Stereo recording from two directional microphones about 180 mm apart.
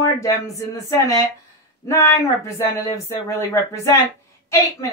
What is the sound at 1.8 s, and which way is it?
Speech, 15° left (ahead or behind).